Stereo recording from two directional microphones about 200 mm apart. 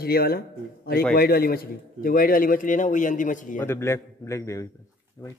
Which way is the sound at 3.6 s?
10° left (ahead or behind).